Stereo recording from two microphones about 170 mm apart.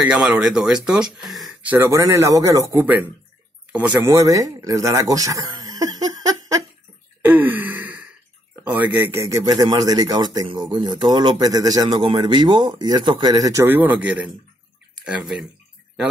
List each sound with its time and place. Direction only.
0.0 s speech: 5° right (ahead or behind); by 6.6 s 20° right (ahead or behind)
7.2 s gasp: 10° right (ahead or behind)
8.6 s speech: 10° right (ahead or behind)